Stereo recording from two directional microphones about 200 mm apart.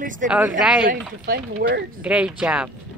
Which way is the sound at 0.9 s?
50° right (ahead or behind).